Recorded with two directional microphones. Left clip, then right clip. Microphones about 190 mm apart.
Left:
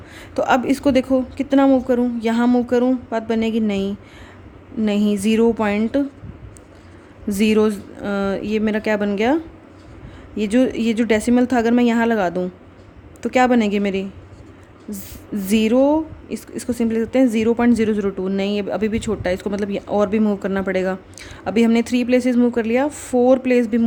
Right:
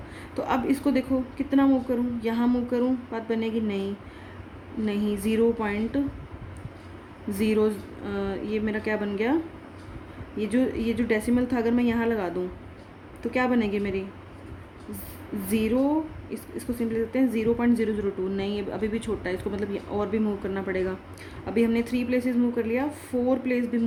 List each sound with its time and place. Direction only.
0.2 s a woman's voice: 55° left (ahead or behind)
7.3 s a woman's voice: 55° left (ahead or behind)
15.4 s a woman's voice: 55° left (ahead or behind)